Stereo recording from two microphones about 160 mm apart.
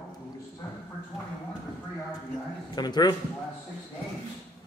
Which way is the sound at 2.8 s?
25° left (ahead or behind).